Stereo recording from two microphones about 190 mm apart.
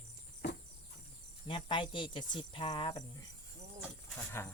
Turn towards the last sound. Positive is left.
turn(degrees=15)  # may be behind; listen again after turning